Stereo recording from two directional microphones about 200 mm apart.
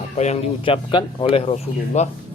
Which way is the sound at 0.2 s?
30° left (ahead or behind).